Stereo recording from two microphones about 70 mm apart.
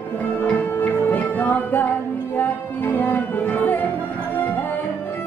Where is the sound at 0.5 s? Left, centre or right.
Left.